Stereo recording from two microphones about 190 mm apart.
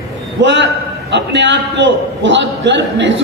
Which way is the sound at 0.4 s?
70° right (ahead or behind).